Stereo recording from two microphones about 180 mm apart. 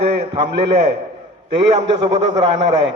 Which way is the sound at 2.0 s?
30° right (ahead or behind).